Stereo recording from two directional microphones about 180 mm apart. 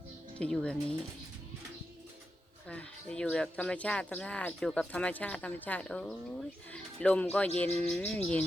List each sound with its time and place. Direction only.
0.3 s speech: 5° left (ahead or behind)
2.6 s speech: 5° left (ahead or behind)